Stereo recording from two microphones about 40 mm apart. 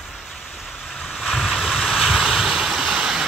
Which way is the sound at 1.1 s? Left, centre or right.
Centre.